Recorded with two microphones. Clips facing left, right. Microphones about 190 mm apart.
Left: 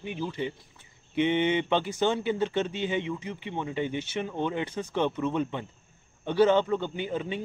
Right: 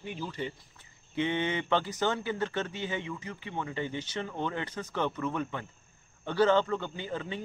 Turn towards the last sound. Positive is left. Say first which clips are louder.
# left 5 dB
turn(degrees=20)  # may be behind; listen again after turning